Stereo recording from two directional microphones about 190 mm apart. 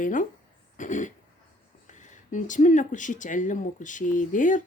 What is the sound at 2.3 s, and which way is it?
A woman's voice, 40° left (ahead or behind).